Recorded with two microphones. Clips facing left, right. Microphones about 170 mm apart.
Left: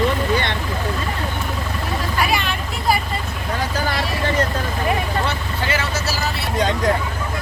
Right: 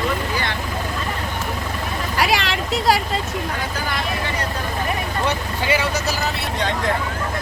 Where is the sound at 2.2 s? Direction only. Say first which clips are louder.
Right 3 dB; 90° right.